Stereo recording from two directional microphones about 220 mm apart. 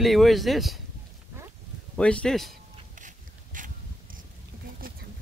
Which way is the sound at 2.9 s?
35° right (ahead or behind).